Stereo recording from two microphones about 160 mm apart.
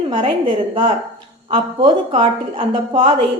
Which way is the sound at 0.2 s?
35° right (ahead or behind).